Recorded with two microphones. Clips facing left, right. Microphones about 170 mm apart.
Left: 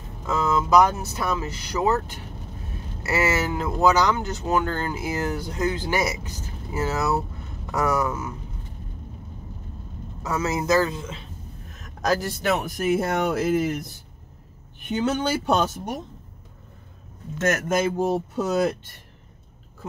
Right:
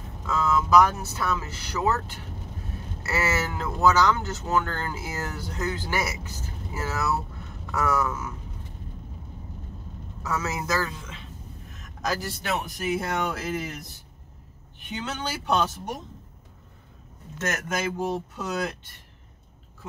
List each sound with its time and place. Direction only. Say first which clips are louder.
0.3 s speech: left 1 dB; 20° left (ahead or behind)
10.2 s speech: left 5 dB; 20° left (ahead or behind)
12.1 s speech: left 6 dB; 50° left (ahead or behind)
14.9 s speech: left 9 dB; 45° left (ahead or behind)
17.5 s speech: left 7 dB; 45° left (ahead or behind)